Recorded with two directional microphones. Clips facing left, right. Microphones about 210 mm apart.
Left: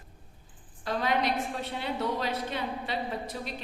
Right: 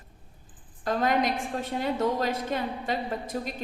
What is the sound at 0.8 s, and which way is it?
A woman's voice, 45° right (ahead or behind).